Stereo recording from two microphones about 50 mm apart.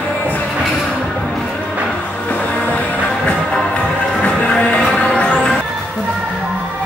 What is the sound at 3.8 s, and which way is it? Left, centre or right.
Music, centre.